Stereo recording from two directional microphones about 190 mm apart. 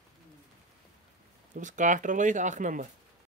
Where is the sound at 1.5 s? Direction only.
40° right (ahead or behind).